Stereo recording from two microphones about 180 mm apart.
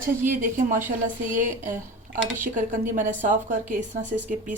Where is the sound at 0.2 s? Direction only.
45° right (ahead or behind).